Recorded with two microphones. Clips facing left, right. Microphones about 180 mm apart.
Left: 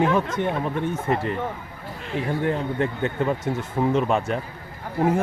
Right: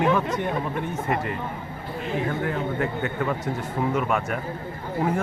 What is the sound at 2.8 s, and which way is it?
Speech, 25° left (ahead or behind).